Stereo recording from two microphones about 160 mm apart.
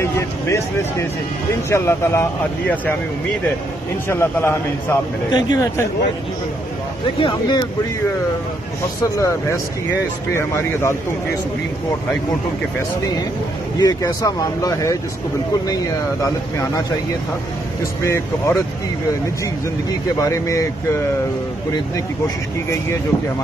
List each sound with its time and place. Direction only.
0.0 s speech: 15° left (ahead or behind)
4.1 s speech: 15° left (ahead or behind)
7.2 s speech: 30° left (ahead or behind)
9.1 s speech: 20° left (ahead or behind)
13.7 s speech: 25° left (ahead or behind)
18.0 s speech: 15° left (ahead or behind)
20.2 s speech: 20° left (ahead or behind)